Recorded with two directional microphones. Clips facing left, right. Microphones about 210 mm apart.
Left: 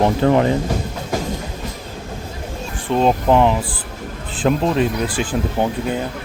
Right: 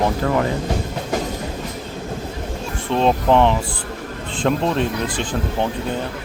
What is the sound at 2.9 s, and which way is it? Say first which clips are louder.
Speech: left 1 dB; 5° left (ahead or behind).